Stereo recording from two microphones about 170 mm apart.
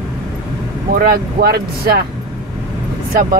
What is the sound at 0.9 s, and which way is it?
Speech, 60° right (ahead or behind).